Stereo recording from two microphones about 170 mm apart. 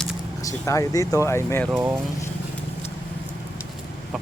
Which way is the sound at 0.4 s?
20° left (ahead or behind).